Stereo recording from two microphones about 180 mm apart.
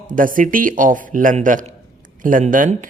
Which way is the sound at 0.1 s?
50° right (ahead or behind).